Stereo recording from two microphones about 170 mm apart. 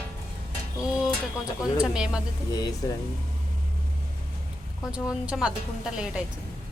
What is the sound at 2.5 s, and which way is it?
Speech, 20° left (ahead or behind).